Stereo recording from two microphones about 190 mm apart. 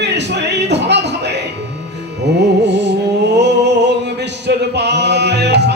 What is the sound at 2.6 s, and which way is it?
Music, 65° right (ahead or behind).